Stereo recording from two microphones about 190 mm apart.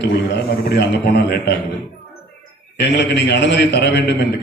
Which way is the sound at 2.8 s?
65° left (ahead or behind).